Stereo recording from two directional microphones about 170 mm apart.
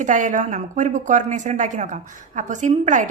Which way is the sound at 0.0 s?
45° right (ahead or behind).